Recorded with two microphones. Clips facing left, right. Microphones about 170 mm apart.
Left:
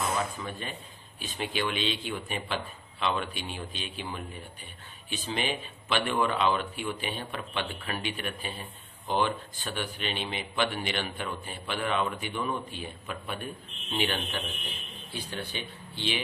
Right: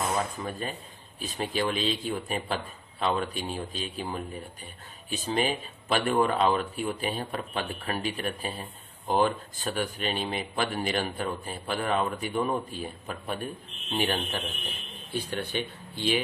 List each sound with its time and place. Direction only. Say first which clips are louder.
0.4 s speech: right 4 dB; 40° right (ahead or behind)
15.1 s speech: right 6 dB; 55° right (ahead or behind)